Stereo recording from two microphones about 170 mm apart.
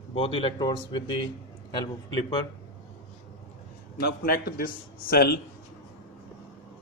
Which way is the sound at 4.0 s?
65° left (ahead or behind).